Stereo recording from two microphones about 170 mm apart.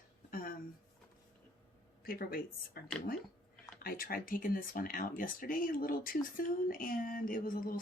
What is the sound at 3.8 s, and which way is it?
Speech, 60° left (ahead or behind).